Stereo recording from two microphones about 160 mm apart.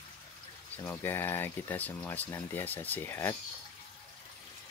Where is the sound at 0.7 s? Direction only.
15° left (ahead or behind).